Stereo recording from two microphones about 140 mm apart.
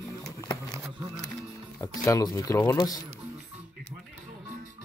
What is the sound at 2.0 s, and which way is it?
Speech, 20° left (ahead or behind).